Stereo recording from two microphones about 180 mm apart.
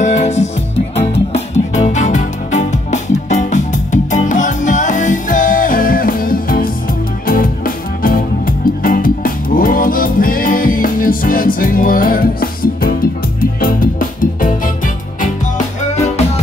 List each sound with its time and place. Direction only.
0.0 s music: 40° left (ahead or behind)